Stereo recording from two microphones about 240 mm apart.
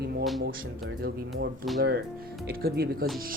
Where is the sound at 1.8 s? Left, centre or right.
Right.